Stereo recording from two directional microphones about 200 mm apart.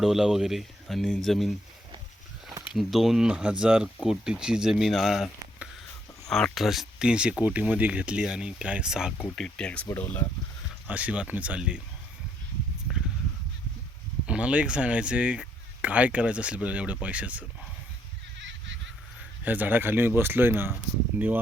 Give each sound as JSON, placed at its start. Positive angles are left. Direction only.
{"t": 0.0, "sound": "speech", "side_deg": 0}
{"t": 2.7, "sound": "speech", "side_deg": 0}
{"t": 10.8, "sound": "speech", "side_deg": -5}
{"t": 14.3, "sound": "speech", "side_deg": -5}
{"t": 18.3, "sound": "a sound", "side_deg": -65}
{"t": 19.5, "sound": "speech", "side_deg": -10}